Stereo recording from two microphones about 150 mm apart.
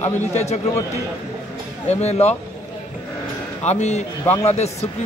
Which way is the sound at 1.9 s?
45° left (ahead or behind).